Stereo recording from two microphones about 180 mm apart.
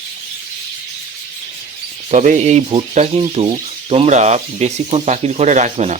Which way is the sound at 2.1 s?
45° right (ahead or behind).